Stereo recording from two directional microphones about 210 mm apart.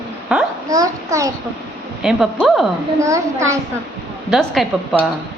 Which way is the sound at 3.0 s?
15° right (ahead or behind).